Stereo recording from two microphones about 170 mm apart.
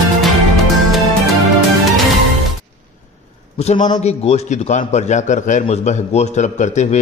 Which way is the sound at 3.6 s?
40° left (ahead or behind).